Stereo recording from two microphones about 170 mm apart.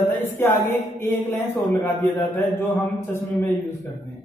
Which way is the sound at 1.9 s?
15° left (ahead or behind).